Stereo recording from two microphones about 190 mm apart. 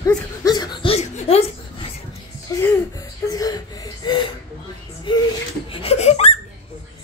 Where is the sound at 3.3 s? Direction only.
20° left (ahead or behind).